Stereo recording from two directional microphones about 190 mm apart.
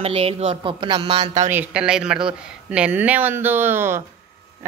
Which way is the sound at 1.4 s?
10° right (ahead or behind).